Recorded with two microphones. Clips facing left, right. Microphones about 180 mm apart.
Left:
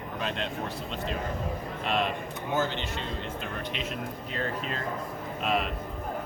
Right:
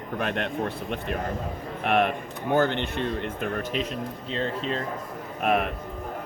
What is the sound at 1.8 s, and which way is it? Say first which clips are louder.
Speech: right 6 dB; 60° right (ahead or behind).